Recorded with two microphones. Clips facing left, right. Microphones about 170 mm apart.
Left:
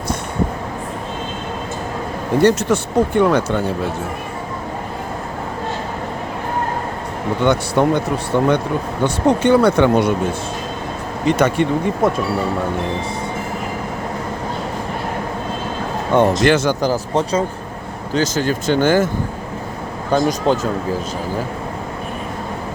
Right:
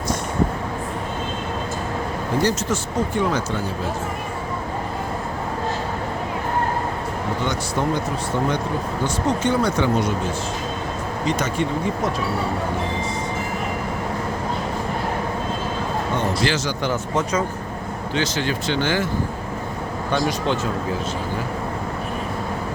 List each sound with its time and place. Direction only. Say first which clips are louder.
2.4 s speech: left 9 dB; 60° left (ahead or behind)
7.4 s speech: left 10 dB; 60° left (ahead or behind)
11.3 s speech: left 9 dB; 60° left (ahead or behind)
16.4 s speech: left 8 dB; 55° left (ahead or behind)
16.8 s speech: left 5 dB; 35° left (ahead or behind)